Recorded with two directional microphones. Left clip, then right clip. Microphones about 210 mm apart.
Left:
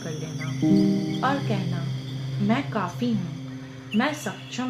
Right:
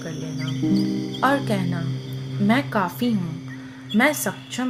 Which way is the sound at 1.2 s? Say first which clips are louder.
Right 8 dB; 30° right (ahead or behind).